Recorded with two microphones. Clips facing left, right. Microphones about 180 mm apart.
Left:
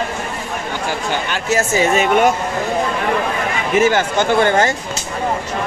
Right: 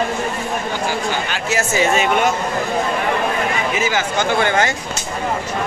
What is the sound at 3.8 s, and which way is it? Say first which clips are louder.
Speech: left 10 dB; 55° left (ahead or behind).